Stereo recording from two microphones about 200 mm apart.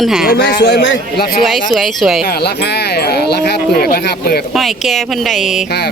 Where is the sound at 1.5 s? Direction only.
Centre (ahead or behind).